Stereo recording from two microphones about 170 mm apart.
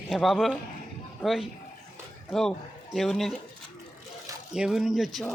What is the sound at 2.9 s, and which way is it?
Speech, centre (ahead or behind).